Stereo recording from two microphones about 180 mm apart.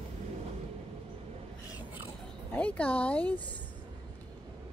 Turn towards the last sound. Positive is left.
turn(degrees=10)  # may be behind; listen again after turning